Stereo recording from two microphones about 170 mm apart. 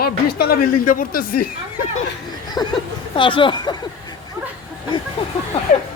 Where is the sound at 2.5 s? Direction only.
25° left (ahead or behind).